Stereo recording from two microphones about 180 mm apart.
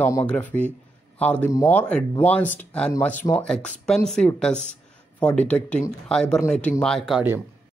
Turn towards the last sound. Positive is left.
turn(degrees=-5)  # may be behind; listen again after turning